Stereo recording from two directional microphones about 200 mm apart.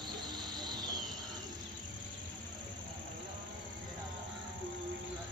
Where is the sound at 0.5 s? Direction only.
20° right (ahead or behind).